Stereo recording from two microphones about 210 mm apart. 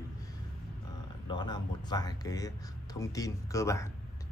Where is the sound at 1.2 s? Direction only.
20° left (ahead or behind).